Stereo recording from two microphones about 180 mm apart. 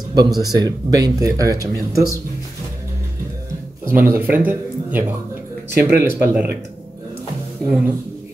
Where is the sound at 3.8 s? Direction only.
10° right (ahead or behind).